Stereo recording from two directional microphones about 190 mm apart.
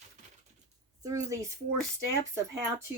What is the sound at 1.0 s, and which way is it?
Speech, 15° right (ahead or behind).